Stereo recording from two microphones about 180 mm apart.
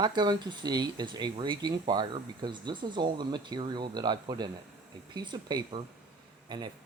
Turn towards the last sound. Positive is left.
turn(degrees=-25)  # may be behind; listen again after turning